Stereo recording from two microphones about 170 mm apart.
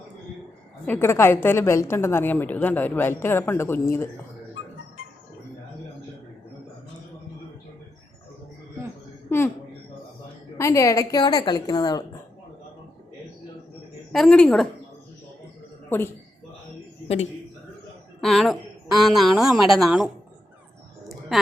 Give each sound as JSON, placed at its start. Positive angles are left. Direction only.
{"t": 0.9, "sound": "a woman's voice", "side_deg": 15}
{"t": 10.6, "sound": "a woman's voice", "side_deg": 15}
{"t": 14.1, "sound": "a woman's voice", "side_deg": 5}
{"t": 15.9, "sound": "a woman's voice", "side_deg": 10}
{"t": 18.2, "sound": "a woman's voice", "side_deg": 0}